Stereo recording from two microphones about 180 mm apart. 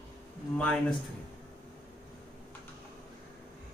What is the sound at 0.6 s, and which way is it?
Speech, 5° left (ahead or behind).